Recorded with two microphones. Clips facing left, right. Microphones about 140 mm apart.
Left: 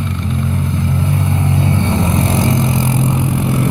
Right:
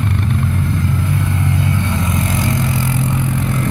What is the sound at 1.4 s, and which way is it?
Vehicle, 25° left (ahead or behind).